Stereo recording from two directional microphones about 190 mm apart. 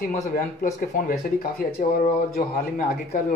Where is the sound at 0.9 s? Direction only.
50° left (ahead or behind).